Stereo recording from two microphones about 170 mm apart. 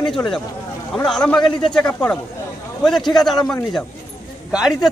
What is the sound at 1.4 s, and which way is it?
Speech, 25° left (ahead or behind).